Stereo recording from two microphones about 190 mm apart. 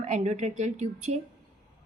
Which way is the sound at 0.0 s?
40° right (ahead or behind).